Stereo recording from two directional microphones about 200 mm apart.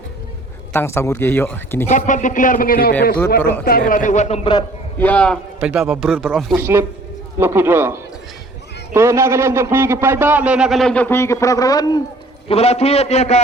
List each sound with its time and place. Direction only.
0.7 s speech: 10° left (ahead or behind)
1.9 s speech: 40° left (ahead or behind)
4.9 s speech: 5° left (ahead or behind)
5.5 s a man's voice: 5° right (ahead or behind); by 12.0 s 20° left (ahead or behind)
12.5 s speech: 30° left (ahead or behind)